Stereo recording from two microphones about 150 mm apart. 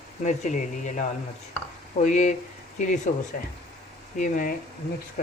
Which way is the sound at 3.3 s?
70° left (ahead or behind).